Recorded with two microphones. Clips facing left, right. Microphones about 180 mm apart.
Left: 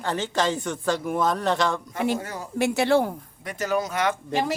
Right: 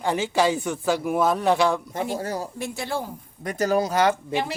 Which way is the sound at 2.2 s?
35° right (ahead or behind).